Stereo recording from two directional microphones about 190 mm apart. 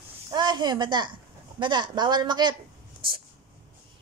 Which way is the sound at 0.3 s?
20° right (ahead or behind).